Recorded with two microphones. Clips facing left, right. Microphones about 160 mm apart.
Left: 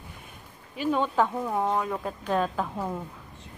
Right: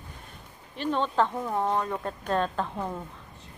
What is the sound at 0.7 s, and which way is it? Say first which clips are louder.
Speech: left 2 dB; 10° left (ahead or behind).